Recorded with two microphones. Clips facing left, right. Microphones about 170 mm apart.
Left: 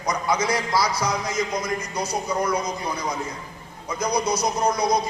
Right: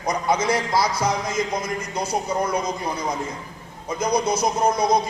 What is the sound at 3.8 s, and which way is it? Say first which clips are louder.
A man's voice: right 2 dB; 25° right (ahead or behind).